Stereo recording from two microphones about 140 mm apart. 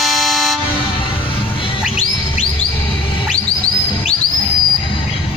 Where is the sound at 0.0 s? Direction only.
Centre (ahead or behind).